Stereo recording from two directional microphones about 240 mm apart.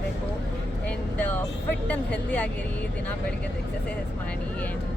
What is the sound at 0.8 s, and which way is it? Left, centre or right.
Speech, centre.